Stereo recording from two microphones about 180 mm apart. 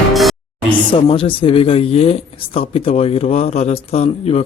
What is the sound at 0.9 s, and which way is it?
Speech, 30° left (ahead or behind).